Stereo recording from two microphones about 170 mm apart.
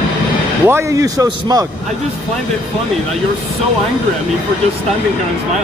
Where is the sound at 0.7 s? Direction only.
15° right (ahead or behind).